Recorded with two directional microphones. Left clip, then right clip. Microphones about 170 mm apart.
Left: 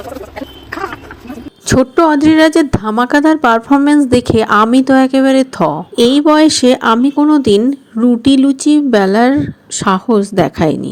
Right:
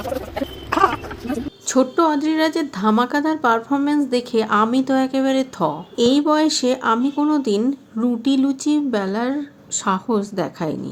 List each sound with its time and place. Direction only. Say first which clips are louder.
1.6 s a woman's voice: left 7 dB; 45° left (ahead or behind)